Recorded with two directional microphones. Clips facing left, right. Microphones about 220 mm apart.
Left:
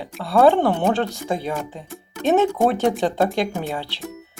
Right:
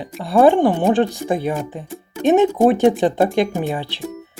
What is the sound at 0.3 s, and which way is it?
Speech, 15° right (ahead or behind).